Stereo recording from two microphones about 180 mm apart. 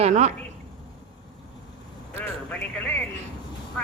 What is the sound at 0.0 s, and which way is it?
Speech, 40° right (ahead or behind).